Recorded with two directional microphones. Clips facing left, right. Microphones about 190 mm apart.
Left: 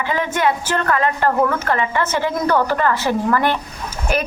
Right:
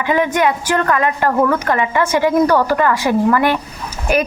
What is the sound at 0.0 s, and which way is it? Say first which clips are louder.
A woman's voice: right 4 dB; 15° right (ahead or behind).